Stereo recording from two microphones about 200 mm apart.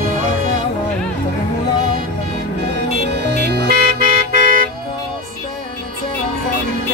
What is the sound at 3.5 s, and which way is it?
Toot, 50° right (ahead or behind).